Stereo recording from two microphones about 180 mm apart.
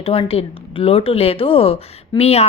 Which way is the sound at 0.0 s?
30° left (ahead or behind).